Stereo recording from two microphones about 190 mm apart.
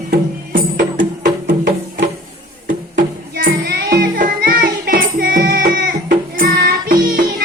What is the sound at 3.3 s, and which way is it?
Music, 50° right (ahead or behind).